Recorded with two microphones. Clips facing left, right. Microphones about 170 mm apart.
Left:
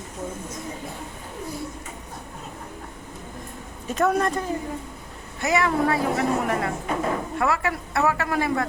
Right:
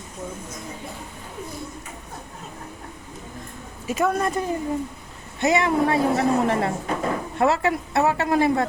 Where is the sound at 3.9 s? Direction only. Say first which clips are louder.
Even; 5° right (ahead or behind).